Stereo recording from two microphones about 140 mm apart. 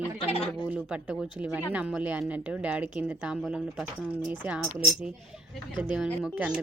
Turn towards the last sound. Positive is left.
turn(degrees=-10)  # may be behind; listen again after turning